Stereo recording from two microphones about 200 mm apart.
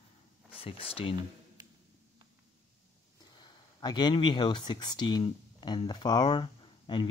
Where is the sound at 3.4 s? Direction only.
20° left (ahead or behind).